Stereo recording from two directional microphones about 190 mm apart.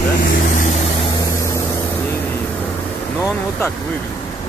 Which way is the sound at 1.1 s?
15° left (ahead or behind).